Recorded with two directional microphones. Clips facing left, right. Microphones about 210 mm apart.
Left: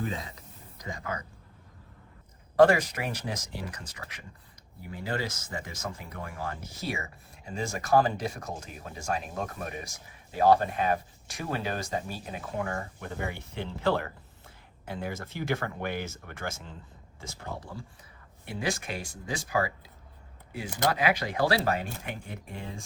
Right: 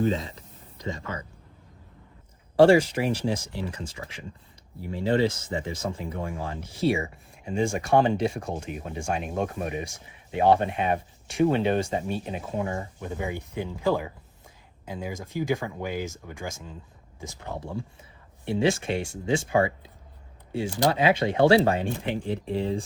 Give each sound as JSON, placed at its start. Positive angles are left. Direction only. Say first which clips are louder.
{"t": 0.0, "sound": "speech", "louder": "right 9 dB", "side_deg": -25}
{"t": 2.6, "sound": "speech", "louder": "right 4 dB", "side_deg": -30}